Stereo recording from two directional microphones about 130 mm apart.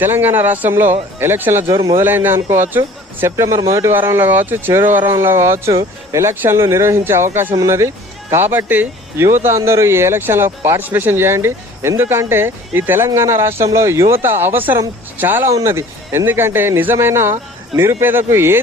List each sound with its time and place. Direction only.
0.0 s a man's voice: 15° right (ahead or behind)